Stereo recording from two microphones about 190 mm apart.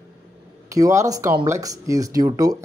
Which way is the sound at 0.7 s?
15° right (ahead or behind).